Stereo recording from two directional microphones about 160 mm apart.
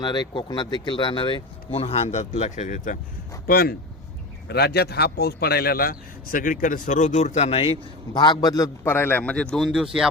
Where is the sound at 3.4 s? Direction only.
65° left (ahead or behind).